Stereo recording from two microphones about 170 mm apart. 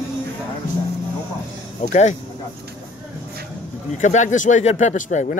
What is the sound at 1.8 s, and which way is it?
Speech, 45° left (ahead or behind).